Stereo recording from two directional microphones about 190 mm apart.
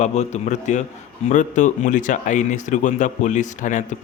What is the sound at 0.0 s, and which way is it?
Speech, 35° left (ahead or behind).